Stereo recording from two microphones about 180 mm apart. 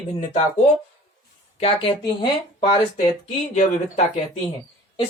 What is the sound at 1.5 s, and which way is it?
Speech, 30° left (ahead or behind).